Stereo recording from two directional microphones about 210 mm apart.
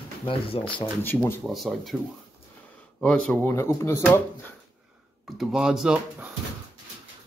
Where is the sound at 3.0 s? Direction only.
5° left (ahead or behind).